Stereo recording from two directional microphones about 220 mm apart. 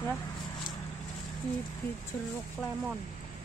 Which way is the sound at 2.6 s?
5° left (ahead or behind).